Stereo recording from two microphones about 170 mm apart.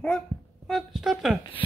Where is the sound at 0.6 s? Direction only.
Centre (ahead or behind).